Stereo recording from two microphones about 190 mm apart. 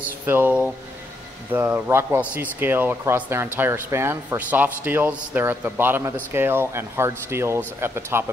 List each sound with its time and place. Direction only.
0.3 s a man's voice: 10° right (ahead or behind)